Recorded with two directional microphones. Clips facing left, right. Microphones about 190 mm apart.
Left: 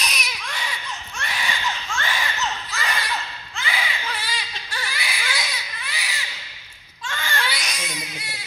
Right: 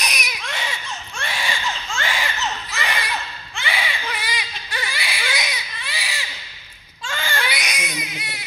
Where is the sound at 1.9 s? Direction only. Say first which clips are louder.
Right 1 dB; 25° right (ahead or behind).